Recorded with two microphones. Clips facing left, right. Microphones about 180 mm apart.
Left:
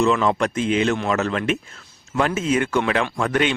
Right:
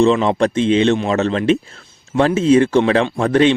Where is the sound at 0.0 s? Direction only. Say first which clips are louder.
Right 5 dB; 25° right (ahead or behind).